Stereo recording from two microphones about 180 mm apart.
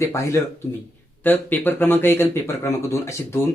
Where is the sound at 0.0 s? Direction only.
15° left (ahead or behind).